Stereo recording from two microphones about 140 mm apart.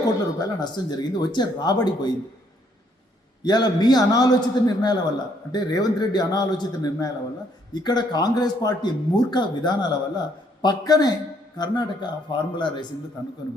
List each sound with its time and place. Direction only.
0.3 s a man's voice: 30° left (ahead or behind)
3.4 s a man's voice: 30° left (ahead or behind)